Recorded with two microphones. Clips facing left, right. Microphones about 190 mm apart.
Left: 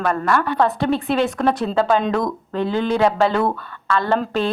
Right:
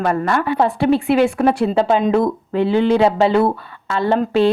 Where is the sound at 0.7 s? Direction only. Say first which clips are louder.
Right 5 dB; 10° right (ahead or behind).